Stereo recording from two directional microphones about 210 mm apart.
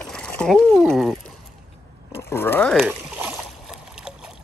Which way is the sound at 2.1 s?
10° left (ahead or behind).